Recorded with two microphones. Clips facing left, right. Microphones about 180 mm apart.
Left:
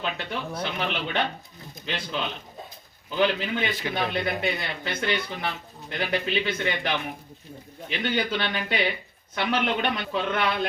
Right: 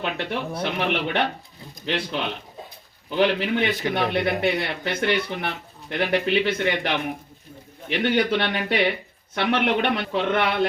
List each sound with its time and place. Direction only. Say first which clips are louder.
0.0 s speech: right 4 dB; 60° right (ahead or behind)
10.1 s speech: right 4 dB; 25° right (ahead or behind)